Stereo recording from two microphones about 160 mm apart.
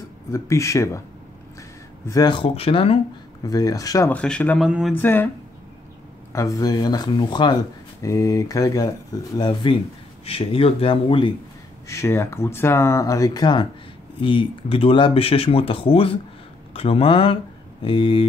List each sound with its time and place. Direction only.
0.3 s speech: 20° left (ahead or behind)
2.0 s speech: 25° left (ahead or behind)
3.4 s speech: 25° left (ahead or behind)
4.1 s speech: 10° left (ahead or behind)
4.6 s speech: 5° right (ahead or behind)
4.9 s speech: 15° left (ahead or behind)
6.3 s speech: 20° left (ahead or behind)
11.9 s speech: 15° left (ahead or behind); by 18.2 s 35° left (ahead or behind)